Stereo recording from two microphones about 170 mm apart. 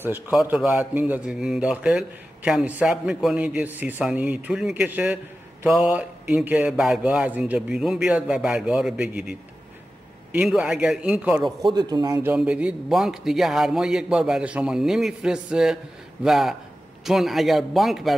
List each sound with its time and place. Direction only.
0.0 s a man's voice: 10° right (ahead or behind)
11.6 s a man's voice: 25° right (ahead or behind)
12.2 s a man's voice: 10° right (ahead or behind)